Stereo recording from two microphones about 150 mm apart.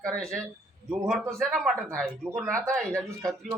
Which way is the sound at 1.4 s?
Centre (ahead or behind).